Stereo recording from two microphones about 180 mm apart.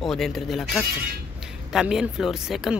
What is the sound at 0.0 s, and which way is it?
Speech, centre (ahead or behind).